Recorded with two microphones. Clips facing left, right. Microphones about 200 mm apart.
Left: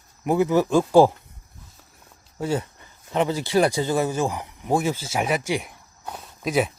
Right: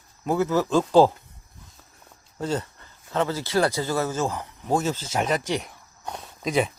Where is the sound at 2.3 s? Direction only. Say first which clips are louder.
Left 2 dB; 10° left (ahead or behind).